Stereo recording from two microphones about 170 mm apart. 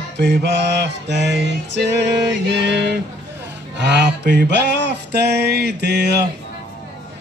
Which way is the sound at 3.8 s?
85° right.